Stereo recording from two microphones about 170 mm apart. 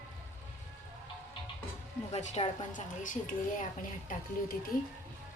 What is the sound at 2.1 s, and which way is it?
A woman's voice, 40° left (ahead or behind).